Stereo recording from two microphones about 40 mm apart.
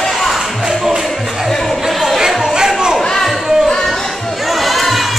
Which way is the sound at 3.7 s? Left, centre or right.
Centre.